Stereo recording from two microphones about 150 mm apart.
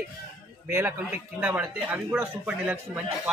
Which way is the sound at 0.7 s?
15° right (ahead or behind).